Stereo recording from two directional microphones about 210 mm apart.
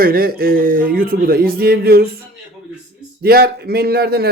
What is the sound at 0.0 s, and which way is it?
A man's voice, 45° right (ahead or behind).